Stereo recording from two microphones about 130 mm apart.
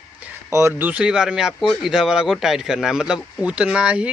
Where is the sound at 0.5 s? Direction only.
20° right (ahead or behind).